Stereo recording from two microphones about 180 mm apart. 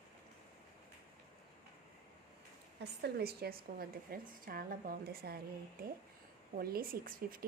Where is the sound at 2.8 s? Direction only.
65° right (ahead or behind).